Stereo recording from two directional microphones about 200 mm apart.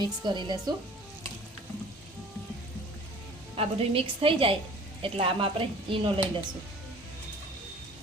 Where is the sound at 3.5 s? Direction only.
30° right (ahead or behind).